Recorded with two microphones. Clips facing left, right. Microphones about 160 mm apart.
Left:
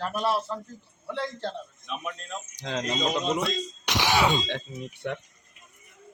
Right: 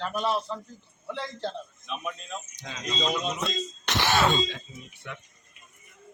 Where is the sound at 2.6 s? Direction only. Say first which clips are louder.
Left 6 dB; 60° left (ahead or behind).